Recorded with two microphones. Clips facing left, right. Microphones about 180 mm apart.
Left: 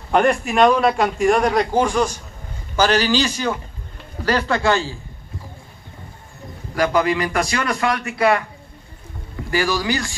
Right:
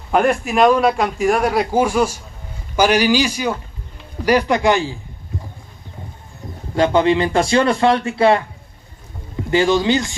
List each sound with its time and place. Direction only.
0.1 s a man's voice: centre (ahead or behind)
6.7 s a man's voice: 25° right (ahead or behind)
9.5 s a man's voice: 25° right (ahead or behind)